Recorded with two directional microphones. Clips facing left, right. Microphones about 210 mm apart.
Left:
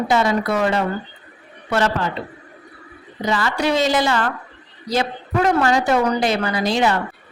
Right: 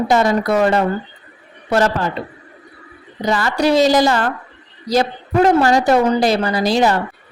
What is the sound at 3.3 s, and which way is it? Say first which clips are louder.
A woman's voice: right 4 dB; 40° right (ahead or behind).